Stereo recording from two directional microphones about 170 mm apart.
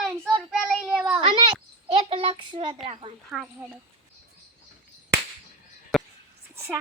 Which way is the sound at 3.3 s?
Centre (ahead or behind).